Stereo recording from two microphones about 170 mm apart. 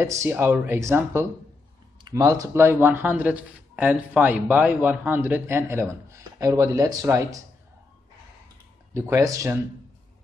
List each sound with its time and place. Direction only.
0.0 s speech: 15° right (ahead or behind)
8.9 s speech: 15° right (ahead or behind)